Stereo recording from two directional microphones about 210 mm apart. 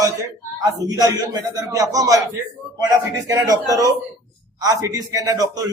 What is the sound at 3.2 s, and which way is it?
A man's voice, 15° right (ahead or behind).